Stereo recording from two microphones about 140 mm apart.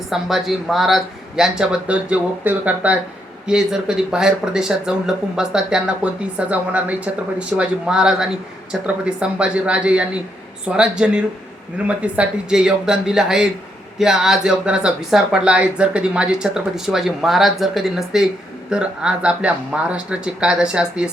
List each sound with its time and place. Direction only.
0.1 s speech: centre (ahead or behind)